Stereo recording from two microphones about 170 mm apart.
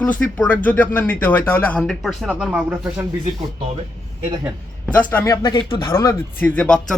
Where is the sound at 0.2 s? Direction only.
10° left (ahead or behind).